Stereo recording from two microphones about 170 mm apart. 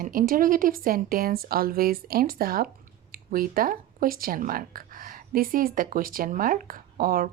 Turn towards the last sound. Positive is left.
turn(degrees=-60)  # may be behind; listen again after turning